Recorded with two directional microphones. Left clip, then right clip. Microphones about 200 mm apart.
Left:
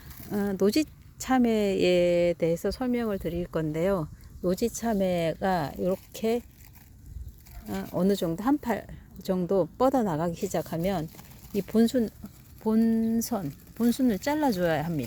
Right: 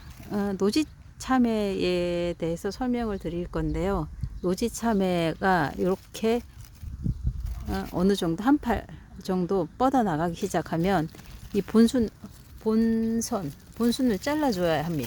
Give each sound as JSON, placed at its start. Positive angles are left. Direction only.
{"t": 0.3, "sound": "speech", "side_deg": 0}
{"t": 7.7, "sound": "speech", "side_deg": -10}